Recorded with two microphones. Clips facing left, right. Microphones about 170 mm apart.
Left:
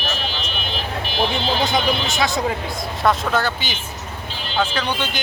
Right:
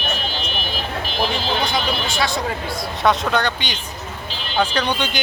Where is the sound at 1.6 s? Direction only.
20° left (ahead or behind).